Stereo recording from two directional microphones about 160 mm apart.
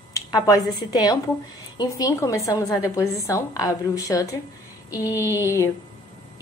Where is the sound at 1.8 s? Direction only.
25° left (ahead or behind).